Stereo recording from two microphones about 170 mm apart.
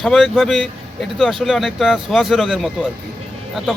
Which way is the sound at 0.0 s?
Centre (ahead or behind).